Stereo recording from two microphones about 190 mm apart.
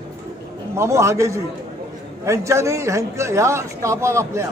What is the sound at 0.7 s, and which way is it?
A man's voice, 15° right (ahead or behind).